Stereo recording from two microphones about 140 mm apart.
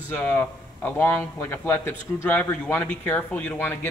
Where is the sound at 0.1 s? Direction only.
10° left (ahead or behind).